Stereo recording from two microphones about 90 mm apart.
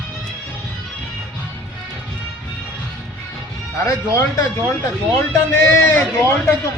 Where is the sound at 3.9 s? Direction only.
35° left (ahead or behind).